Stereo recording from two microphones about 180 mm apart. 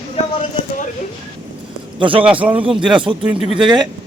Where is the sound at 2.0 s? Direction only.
30° right (ahead or behind).